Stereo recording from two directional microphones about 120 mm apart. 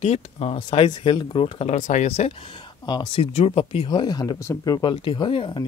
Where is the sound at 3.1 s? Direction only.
55° left (ahead or behind).